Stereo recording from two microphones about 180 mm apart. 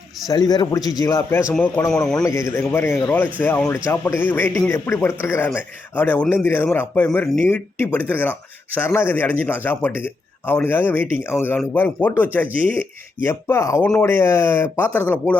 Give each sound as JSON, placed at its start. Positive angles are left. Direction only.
{"t": 0.3, "sound": "a man's voice", "side_deg": 20}